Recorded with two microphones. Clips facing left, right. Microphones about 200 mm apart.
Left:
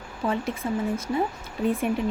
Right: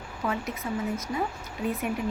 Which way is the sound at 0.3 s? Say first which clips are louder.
Left 4 dB; 30° left (ahead or behind).